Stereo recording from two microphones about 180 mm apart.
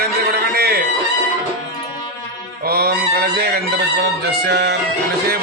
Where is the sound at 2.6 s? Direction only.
60° right (ahead or behind).